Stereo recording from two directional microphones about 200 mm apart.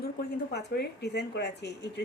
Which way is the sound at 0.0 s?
55° left (ahead or behind).